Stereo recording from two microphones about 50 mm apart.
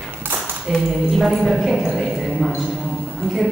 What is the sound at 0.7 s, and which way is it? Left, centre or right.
A woman's voice, centre.